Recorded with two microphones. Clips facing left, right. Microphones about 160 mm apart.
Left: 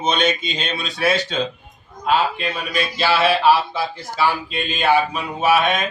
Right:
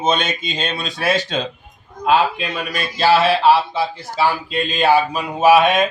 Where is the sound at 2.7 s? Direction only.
40° right (ahead or behind).